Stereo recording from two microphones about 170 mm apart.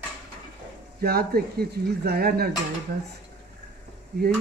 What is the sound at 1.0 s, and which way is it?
Speech, 65° right (ahead or behind).